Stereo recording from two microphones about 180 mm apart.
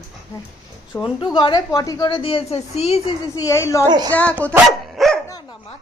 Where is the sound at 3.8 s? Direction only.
20° right (ahead or behind).